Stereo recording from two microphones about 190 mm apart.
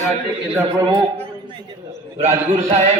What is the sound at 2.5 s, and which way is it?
Speech, 35° right (ahead or behind).